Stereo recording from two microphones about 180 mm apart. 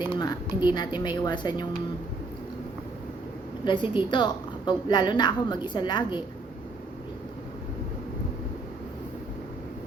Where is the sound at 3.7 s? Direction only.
25° left (ahead or behind).